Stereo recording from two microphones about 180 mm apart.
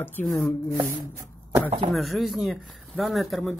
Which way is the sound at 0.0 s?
5° left (ahead or behind).